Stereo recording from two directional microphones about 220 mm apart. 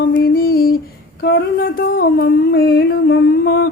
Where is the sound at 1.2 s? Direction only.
45° left (ahead or behind).